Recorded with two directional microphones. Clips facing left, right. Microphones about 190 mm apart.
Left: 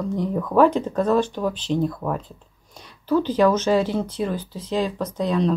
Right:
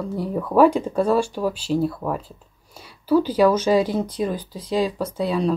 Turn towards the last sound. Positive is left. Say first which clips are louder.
# even
turn(degrees=-10)  # may be behind; listen again after turning